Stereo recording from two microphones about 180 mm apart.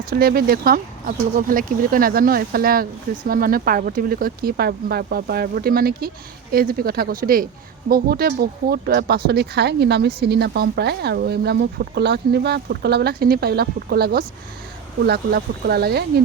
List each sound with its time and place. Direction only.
0.1 s speech: 55° right (ahead or behind)